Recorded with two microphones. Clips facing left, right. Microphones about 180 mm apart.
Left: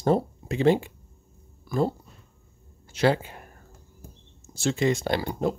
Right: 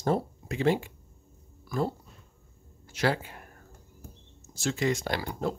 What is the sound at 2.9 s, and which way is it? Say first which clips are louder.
Speech: left 5 dB; 25° left (ahead or behind).